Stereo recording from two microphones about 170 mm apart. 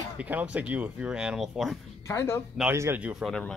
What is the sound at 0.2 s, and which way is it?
Speech, 10° right (ahead or behind).